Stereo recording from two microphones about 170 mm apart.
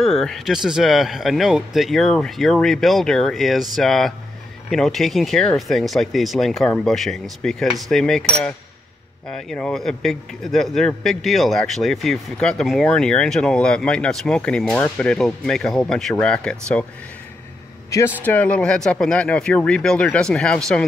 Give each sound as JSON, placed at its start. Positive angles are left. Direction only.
{"t": 0.0, "sound": "a man's voice", "side_deg": 0}
{"t": 17.8, "sound": "a man's voice", "side_deg": 20}